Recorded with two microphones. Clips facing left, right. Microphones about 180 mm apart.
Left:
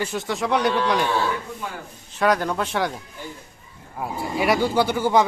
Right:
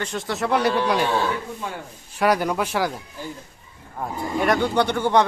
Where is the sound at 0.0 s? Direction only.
5° left (ahead or behind).